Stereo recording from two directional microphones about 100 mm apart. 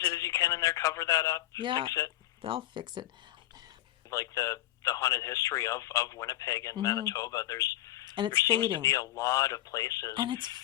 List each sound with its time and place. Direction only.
0.0 s speech: 35° left (ahead or behind)
1.5 s speech: 50° right (ahead or behind)
4.1 s speech: 35° left (ahead or behind)
8.0 s a sound: 50° right (ahead or behind)
8.6 s speech: 35° left (ahead or behind)
10.2 s speech: 50° right (ahead or behind)